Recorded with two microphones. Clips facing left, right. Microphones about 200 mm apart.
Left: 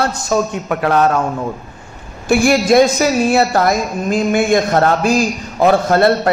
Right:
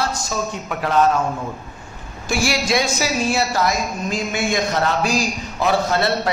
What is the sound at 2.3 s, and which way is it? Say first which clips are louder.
A woman's voice: left 9 dB; 55° left (ahead or behind).